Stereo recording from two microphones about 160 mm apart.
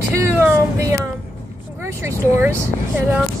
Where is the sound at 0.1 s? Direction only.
15° right (ahead or behind).